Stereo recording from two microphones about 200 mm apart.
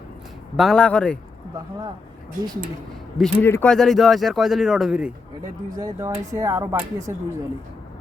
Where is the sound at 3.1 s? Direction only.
Centre (ahead or behind).